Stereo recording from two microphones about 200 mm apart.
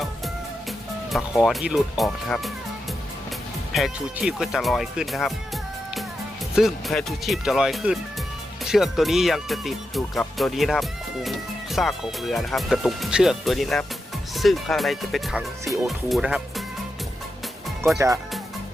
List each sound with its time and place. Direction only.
1.4 s speech: centre (ahead or behind)
3.8 s speech: centre (ahead or behind)
6.6 s speech: centre (ahead or behind)
17.9 s speech: 15° right (ahead or behind)